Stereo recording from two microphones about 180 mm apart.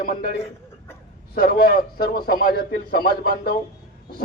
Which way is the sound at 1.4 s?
55° left (ahead or behind).